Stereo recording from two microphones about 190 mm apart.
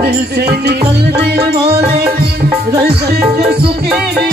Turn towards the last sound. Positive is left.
turn(degrees=-60)  # may be behind; listen again after turning